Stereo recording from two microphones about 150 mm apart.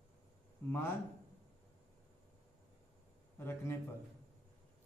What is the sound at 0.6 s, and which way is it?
Speech, 15° left (ahead or behind).